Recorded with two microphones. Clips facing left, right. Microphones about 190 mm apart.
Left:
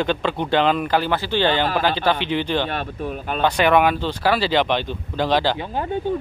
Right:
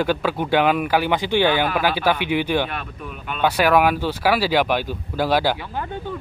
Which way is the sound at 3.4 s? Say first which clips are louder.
Even; 5° right (ahead or behind).